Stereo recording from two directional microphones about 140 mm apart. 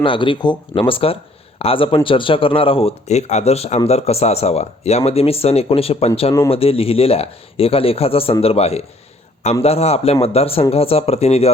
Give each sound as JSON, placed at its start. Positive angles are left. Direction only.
{"t": 0.0, "sound": "speech", "side_deg": 35}